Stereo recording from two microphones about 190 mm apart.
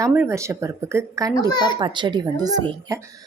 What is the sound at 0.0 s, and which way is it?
Speech, 10° right (ahead or behind).